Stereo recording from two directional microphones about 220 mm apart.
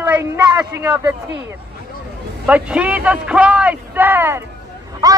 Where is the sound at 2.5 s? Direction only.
5° right (ahead or behind).